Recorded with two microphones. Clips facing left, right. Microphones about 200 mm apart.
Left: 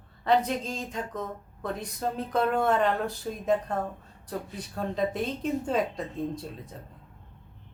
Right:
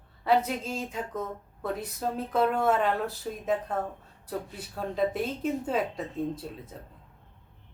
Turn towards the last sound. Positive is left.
turn(degrees=-5)  # may be behind; listen again after turning